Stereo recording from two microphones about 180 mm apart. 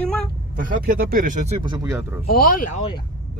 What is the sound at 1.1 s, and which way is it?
Speech, 50° right (ahead or behind).